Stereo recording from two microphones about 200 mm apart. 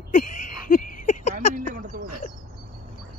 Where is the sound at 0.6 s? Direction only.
45° left (ahead or behind).